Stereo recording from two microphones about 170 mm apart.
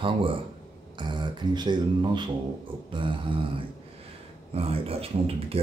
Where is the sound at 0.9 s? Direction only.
25° right (ahead or behind).